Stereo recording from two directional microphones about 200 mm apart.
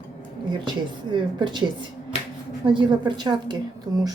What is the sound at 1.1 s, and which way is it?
Speech, 25° right (ahead or behind).